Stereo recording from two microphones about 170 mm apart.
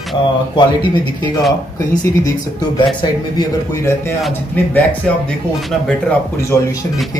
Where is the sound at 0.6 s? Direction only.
25° left (ahead or behind).